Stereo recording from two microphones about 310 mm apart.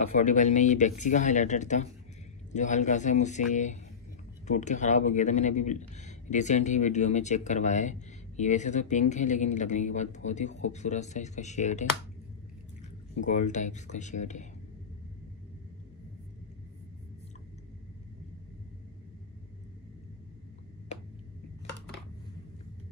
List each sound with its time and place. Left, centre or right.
0.2 s speech: left
13.1 s speech: left